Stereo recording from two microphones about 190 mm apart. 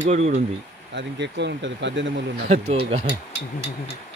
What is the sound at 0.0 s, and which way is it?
Speech, 35° right (ahead or behind).